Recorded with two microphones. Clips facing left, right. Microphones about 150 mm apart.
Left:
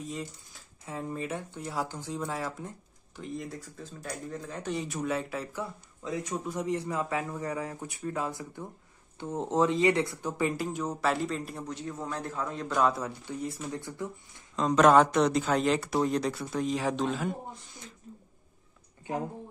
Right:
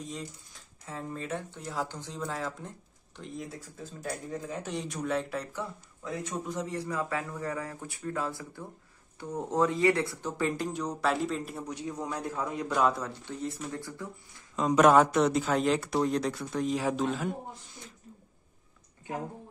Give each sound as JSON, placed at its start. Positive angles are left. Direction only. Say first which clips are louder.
{"t": 0.0, "sound": "speech", "louder": "left 2 dB", "side_deg": 0}
{"t": 0.8, "sound": "speech", "louder": "left 2 dB", "side_deg": 10}
{"t": 3.2, "sound": "speech", "louder": "left 2 dB", "side_deg": 0}
{"t": 6.5, "sound": "speech", "louder": "left 3 dB", "side_deg": 15}
{"t": 11.6, "sound": "a man's voice", "louder": "right 1 dB", "side_deg": -15}
{"t": 12.8, "sound": "speech", "louder": "left 2 dB", "side_deg": 5}
{"t": 13.7, "sound": "speech", "louder": "left 2 dB", "side_deg": 20}
{"t": 14.5, "sound": "speech", "louder": "even", "side_deg": -10}